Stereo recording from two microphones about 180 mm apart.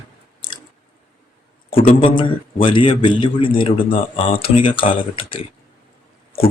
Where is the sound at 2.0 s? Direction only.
30° left (ahead or behind).